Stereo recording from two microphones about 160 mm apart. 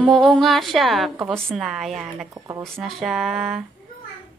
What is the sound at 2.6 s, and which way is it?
Speech, centre (ahead or behind).